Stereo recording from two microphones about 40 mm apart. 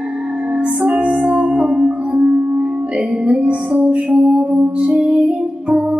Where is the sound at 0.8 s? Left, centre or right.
Right.